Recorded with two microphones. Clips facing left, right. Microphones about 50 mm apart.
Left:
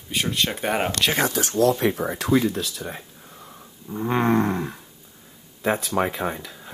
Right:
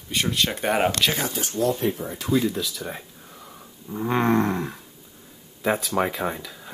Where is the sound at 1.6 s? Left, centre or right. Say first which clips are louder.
Left 4 dB; left.